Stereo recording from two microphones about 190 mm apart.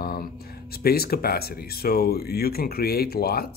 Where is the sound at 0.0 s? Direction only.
50° left (ahead or behind).